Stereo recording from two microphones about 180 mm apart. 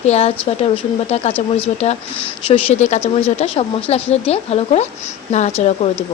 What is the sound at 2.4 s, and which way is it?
A woman's voice, 35° left (ahead or behind).